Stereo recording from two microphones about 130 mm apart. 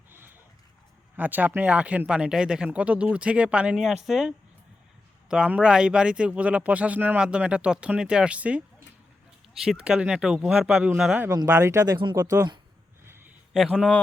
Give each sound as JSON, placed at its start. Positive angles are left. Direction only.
{"t": 0.1, "sound": "dog", "side_deg": -15}
{"t": 1.1, "sound": "speech", "side_deg": -15}
{"t": 9.6, "sound": "speech", "side_deg": -5}
{"t": 11.3, "sound": "speech", "side_deg": -25}
{"t": 13.1, "sound": "a sound", "side_deg": -15}
{"t": 13.5, "sound": "speech", "side_deg": 5}